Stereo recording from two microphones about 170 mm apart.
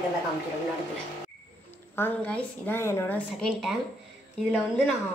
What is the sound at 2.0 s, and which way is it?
A woman's voice, 10° left (ahead or behind).